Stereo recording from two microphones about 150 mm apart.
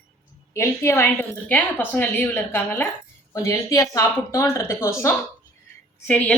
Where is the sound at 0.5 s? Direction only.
20° left (ahead or behind).